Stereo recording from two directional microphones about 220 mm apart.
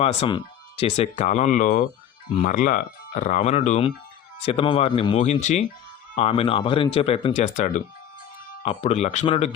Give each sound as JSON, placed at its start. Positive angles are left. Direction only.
{"t": 0.0, "sound": "speech", "side_deg": 30}